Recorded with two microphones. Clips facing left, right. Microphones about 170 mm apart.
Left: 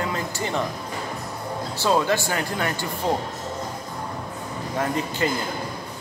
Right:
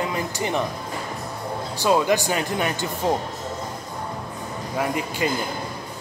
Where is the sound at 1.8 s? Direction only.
15° right (ahead or behind).